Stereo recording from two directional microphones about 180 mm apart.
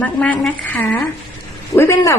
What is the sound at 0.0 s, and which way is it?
A woman's voice, 5° left (ahead or behind).